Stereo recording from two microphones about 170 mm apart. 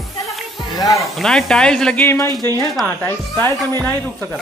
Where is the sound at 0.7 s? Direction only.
20° left (ahead or behind).